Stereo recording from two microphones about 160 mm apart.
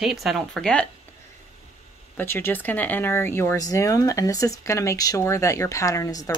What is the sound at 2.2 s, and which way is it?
Speech, 15° left (ahead or behind).